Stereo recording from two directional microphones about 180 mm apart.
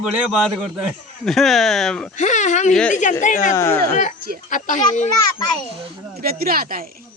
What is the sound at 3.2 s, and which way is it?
Speech, 45° left (ahead or behind).